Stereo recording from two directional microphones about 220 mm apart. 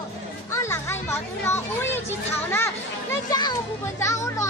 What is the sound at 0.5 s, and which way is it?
Children playing, 10° left (ahead or behind).